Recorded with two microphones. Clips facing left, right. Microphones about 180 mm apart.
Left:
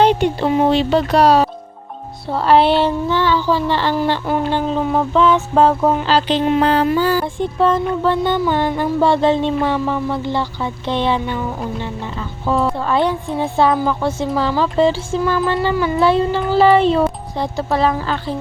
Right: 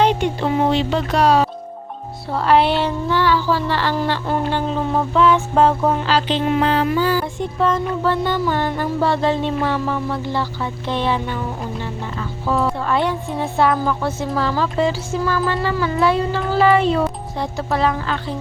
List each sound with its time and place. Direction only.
0.0 s speech: 30° left (ahead or behind)
2.3 s music: 30° left (ahead or behind)
5.1 s music: 20° left (ahead or behind)
6.1 s music: 30° left (ahead or behind)
6.6 s music: 40° left (ahead or behind)
7.3 s music: 30° left (ahead or behind)
12.5 s music: 20° left (ahead or behind)